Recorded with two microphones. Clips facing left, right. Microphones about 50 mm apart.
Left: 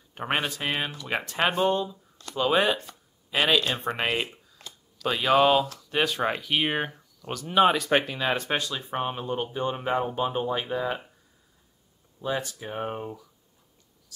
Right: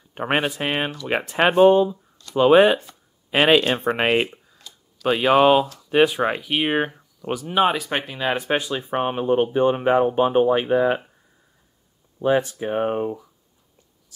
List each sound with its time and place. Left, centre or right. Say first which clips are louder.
0.1 s speech: right 6 dB; right
12.2 s speech: right 10 dB; right